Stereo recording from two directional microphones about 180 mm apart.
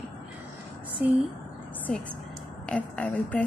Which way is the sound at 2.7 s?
5° left (ahead or behind).